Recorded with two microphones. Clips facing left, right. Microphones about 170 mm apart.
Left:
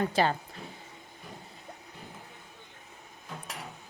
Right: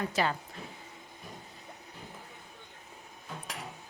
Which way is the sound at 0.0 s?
30° left (ahead or behind).